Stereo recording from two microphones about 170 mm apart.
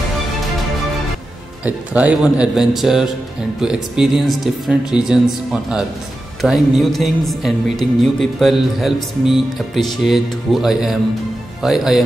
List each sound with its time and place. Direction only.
1.6 s speech: 10° right (ahead or behind)